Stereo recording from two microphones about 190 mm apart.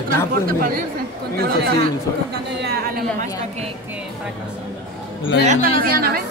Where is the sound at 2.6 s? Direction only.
55° right (ahead or behind).